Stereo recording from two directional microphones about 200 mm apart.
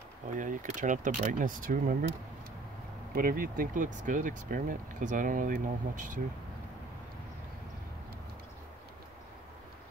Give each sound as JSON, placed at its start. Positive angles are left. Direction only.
{"t": 0.4, "sound": "speech", "side_deg": -40}
{"t": 3.2, "sound": "speech", "side_deg": -45}